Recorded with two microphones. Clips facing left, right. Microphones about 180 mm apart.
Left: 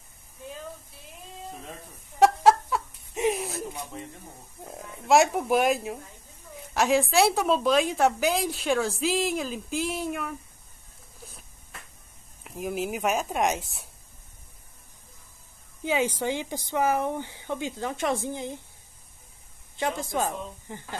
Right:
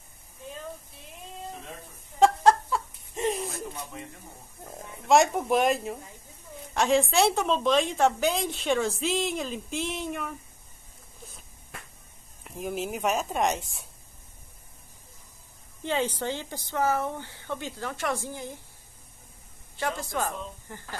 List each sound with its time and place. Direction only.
2.1 s a sound: 5° left (ahead or behind)
4.6 s a woman's voice: 5° left (ahead or behind)
12.4 s a woman's voice: centre (ahead or behind)
15.8 s speech: 10° left (ahead or behind)
19.8 s speech: 20° left (ahead or behind)